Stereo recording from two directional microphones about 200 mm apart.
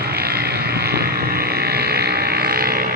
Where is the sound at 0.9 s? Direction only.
50° right (ahead or behind).